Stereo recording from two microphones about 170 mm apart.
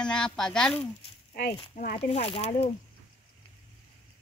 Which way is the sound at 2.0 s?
35° left (ahead or behind).